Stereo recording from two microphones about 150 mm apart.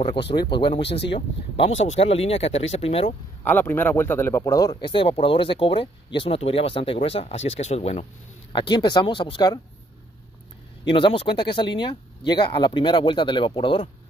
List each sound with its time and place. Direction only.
0.0 s speech: 35° left (ahead or behind)
3.4 s speech: 15° left (ahead or behind); by 8.0 s 45° left (ahead or behind)
8.5 s speech: 30° left (ahead or behind)
10.9 s speech: 35° left (ahead or behind)